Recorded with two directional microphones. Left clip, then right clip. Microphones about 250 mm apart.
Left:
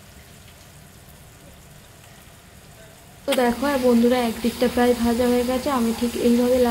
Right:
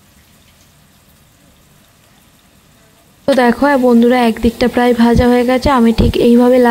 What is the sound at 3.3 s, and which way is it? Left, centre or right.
A woman's voice, right.